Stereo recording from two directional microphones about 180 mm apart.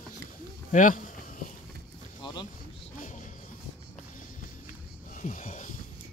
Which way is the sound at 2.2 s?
25° left (ahead or behind).